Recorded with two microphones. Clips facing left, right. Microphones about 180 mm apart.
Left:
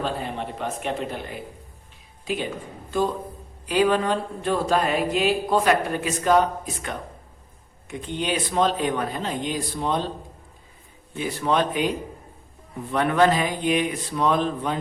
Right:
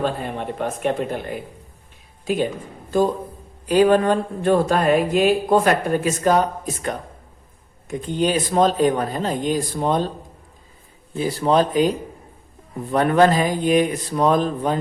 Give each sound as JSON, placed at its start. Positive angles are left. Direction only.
{"t": 0.0, "sound": "speech", "side_deg": -50}
{"t": 3.7, "sound": "speech", "side_deg": -45}
{"t": 7.9, "sound": "speech", "side_deg": -40}
{"t": 11.2, "sound": "speech", "side_deg": -35}